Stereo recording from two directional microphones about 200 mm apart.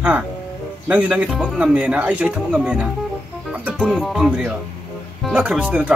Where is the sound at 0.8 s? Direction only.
5° right (ahead or behind).